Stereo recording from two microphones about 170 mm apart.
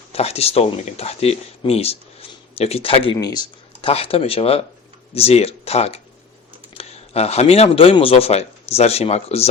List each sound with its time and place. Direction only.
0.1 s speech: 35° left (ahead or behind)